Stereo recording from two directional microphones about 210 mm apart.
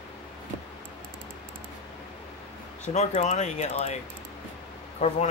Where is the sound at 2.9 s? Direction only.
35° left (ahead or behind).